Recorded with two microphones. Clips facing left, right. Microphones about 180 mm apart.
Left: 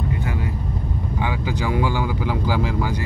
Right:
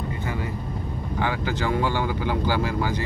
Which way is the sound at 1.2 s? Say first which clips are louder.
Even; 10° left (ahead or behind).